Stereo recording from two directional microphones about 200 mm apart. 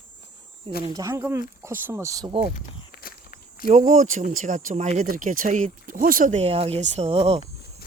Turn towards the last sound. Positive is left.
turn(degrees=-30)  # may be behind; listen again after turning